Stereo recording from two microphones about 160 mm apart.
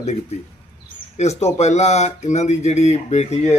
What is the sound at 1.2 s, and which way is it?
Speech, 45° left (ahead or behind).